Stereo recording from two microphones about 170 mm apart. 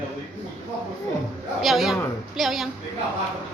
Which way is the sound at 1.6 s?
Centre (ahead or behind).